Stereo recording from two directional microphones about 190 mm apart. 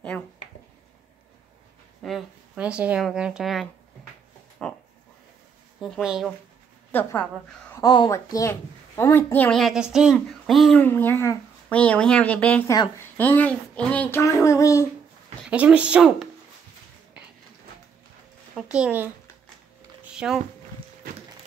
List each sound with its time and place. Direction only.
2.0 s a woman's voice: 5° right (ahead or behind)
4.6 s a sound: 5° left (ahead or behind)
5.8 s speech: centre (ahead or behind)
6.9 s a woman's voice: 10° left (ahead or behind)
7.7 s speech: 20° left (ahead or behind)
12.7 s a woman's voice: 20° left (ahead or behind)
13.2 s speech: 10° left (ahead or behind)
15.4 s speech: 5° right (ahead or behind)
18.7 s speech: 5° right (ahead or behind)
20.2 s speech: 5° right (ahead or behind)